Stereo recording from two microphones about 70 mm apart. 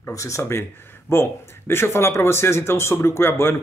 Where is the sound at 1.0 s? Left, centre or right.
Left.